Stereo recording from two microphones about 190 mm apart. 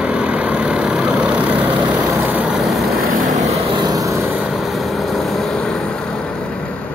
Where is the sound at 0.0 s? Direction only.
5° right (ahead or behind).